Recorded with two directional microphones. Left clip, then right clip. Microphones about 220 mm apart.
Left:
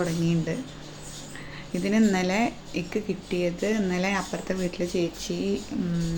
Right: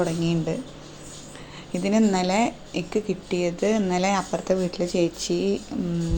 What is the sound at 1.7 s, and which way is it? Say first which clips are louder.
A woman's voice: right 2 dB; 10° right (ahead or behind).